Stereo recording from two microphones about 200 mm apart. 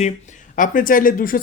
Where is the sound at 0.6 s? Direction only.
45° left (ahead or behind).